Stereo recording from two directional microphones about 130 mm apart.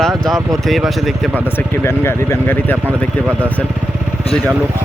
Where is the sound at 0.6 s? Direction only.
Centre (ahead or behind).